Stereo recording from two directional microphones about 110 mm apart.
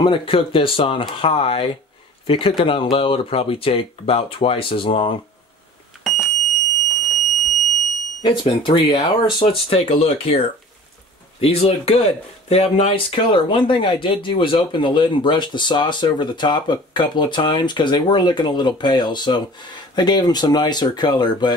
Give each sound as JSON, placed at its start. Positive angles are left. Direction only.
{"t": 0.0, "sound": "speech", "side_deg": 50}
{"t": 6.0, "sound": "fire alarm", "side_deg": 0}
{"t": 8.2, "sound": "speech", "side_deg": 45}
{"t": 9.5, "sound": "speech", "side_deg": 55}